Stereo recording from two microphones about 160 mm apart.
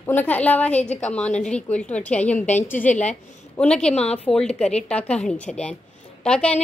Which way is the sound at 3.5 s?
5° left (ahead or behind).